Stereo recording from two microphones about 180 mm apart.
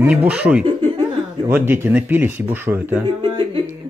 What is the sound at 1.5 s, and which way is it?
Speech, 10° right (ahead or behind).